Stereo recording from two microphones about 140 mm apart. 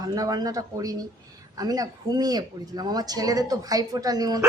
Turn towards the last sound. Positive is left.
turn(degrees=-25)  # may be behind; listen again after turning